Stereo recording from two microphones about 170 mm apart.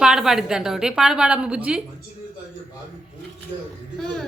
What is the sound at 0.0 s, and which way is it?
A woman's voice, 5° right (ahead or behind).